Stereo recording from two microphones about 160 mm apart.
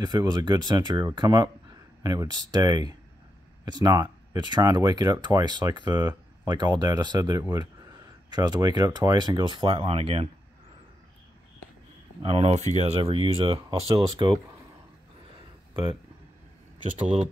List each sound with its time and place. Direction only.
0.0 s speech: 25° right (ahead or behind)
12.2 s speech: 40° right (ahead or behind)